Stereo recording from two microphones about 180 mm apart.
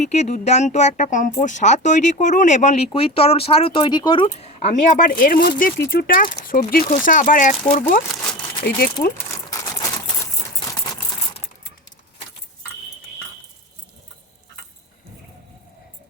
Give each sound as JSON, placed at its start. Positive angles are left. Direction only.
{"t": 0.0, "sound": "speech", "side_deg": 40}
{"t": 8.7, "sound": "speech", "side_deg": 65}
{"t": 9.1, "sound": "a sound", "side_deg": 15}